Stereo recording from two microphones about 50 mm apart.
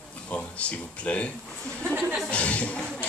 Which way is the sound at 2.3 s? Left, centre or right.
Left.